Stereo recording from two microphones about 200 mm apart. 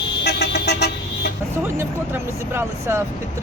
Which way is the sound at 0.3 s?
55° left (ahead or behind).